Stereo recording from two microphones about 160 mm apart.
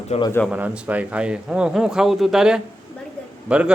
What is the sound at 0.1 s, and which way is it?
Speech, 40° left (ahead or behind).